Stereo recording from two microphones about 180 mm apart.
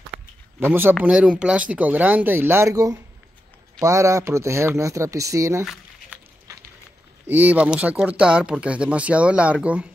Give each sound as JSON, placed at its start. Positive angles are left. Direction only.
{"t": 0.6, "sound": "speech", "side_deg": -10}
{"t": 7.2, "sound": "speech", "side_deg": -10}